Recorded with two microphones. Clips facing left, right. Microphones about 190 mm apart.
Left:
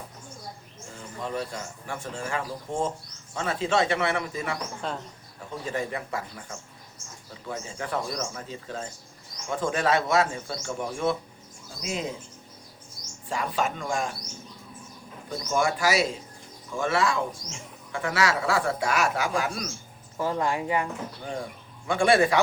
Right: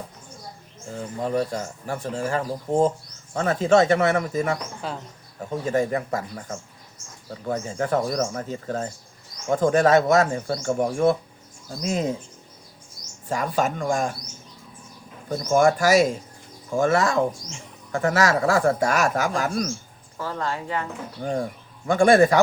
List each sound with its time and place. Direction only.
1.2 s speech: 40° right (ahead or behind)
4.8 s speech: 5° right (ahead or behind)
5.4 s speech: 45° right (ahead or behind)
13.2 s speech: 45° right (ahead or behind)
15.3 s speech: 45° right (ahead or behind)
20.1 s speech: 15° left (ahead or behind)
21.8 s speech: 45° right (ahead or behind)